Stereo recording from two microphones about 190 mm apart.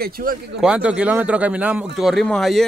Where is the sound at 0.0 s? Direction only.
50° right (ahead or behind).